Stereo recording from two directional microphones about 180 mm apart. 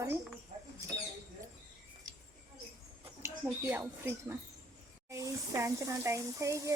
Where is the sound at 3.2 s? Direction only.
15° right (ahead or behind).